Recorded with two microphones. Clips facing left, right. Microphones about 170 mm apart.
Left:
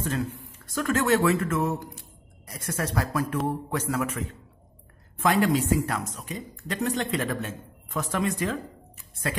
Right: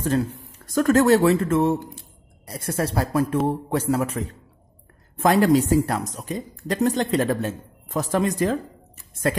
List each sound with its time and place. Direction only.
0.0 s speech: 35° right (ahead or behind)